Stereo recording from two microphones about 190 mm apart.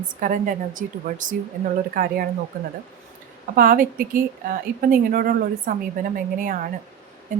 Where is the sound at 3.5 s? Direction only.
50° right (ahead or behind).